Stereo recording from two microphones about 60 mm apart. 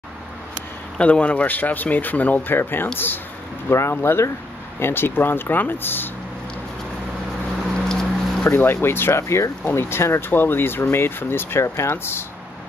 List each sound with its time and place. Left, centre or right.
0.9 s speech: centre; by 2.9 s left
3.6 s speech: left
7.9 s a sound: centre
8.5 s speech: left
11.6 s speech: left
11.9 s speech: left